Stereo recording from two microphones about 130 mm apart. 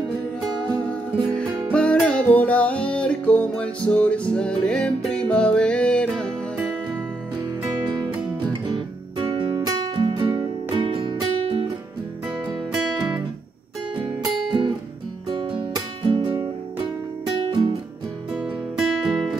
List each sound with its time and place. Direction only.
0.6 s music: 10° left (ahead or behind)
8.6 s music: 40° right (ahead or behind)
12.7 s music: 5° right (ahead or behind)
14.0 s music: 30° right (ahead or behind)
19.0 s music: centre (ahead or behind)